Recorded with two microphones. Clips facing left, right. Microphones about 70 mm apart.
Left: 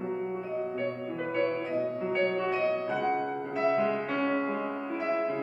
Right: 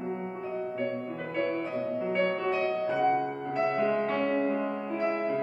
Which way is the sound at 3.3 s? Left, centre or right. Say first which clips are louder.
Left 1 dB; centre.